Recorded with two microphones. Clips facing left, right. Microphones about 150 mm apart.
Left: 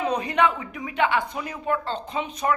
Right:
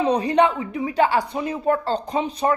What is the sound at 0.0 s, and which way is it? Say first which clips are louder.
Speech: right 5 dB; 30° right (ahead or behind).